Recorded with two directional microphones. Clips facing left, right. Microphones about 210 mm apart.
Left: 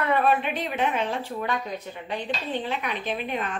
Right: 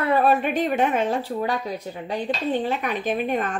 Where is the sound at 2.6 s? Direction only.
45° right (ahead or behind).